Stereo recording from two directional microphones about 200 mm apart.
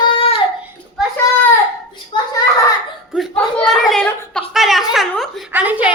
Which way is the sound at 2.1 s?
25° left (ahead or behind).